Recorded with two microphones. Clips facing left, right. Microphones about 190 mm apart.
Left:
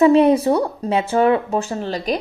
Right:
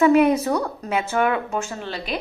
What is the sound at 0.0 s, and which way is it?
Speech, 30° left (ahead or behind).